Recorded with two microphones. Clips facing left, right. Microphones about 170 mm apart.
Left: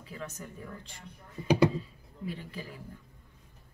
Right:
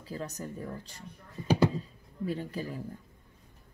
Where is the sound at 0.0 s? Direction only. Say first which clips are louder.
Right 4 dB; 35° right (ahead or behind).